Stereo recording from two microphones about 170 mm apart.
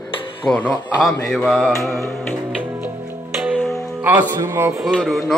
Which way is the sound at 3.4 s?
Centre (ahead or behind).